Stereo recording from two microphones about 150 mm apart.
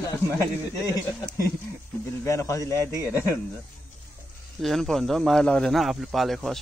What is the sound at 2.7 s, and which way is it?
Speech, 20° right (ahead or behind).